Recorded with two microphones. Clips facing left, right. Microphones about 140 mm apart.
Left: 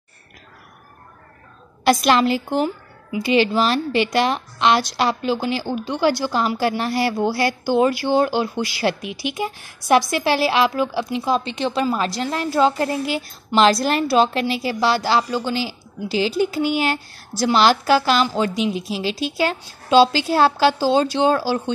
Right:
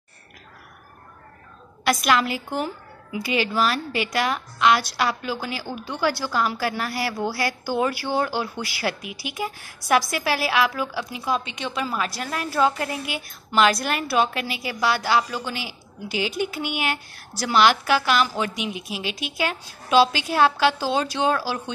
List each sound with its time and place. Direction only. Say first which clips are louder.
1.9 s a woman's voice: left 5 dB; 30° left (ahead or behind)